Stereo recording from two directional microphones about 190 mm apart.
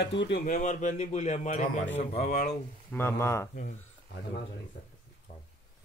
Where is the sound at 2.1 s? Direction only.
55° left (ahead or behind).